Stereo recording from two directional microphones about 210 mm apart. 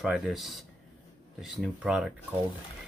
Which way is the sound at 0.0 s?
Centre (ahead or behind).